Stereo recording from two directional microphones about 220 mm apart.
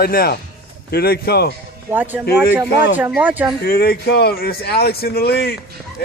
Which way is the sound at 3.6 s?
45° left (ahead or behind).